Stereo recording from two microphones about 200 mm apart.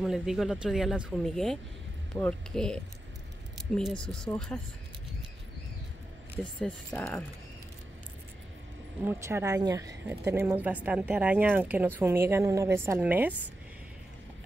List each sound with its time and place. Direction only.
0.0 s speech: centre (ahead or behind)
6.3 s speech: 5° left (ahead or behind)
9.0 s a woman's voice: 15° right (ahead or behind)